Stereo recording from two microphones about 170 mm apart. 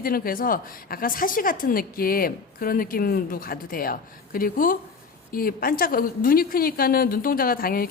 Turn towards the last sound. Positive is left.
turn(degrees=60)  # may be behind; listen again after turning